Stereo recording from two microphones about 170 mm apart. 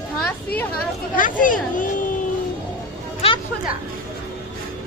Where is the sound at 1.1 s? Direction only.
50° left (ahead or behind).